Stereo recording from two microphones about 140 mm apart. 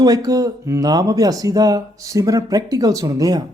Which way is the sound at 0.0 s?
25° right (ahead or behind).